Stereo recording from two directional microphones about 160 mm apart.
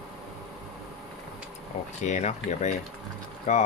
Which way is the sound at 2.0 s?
45° left (ahead or behind).